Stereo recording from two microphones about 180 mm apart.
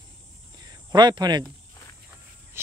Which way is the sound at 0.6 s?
20° right (ahead or behind).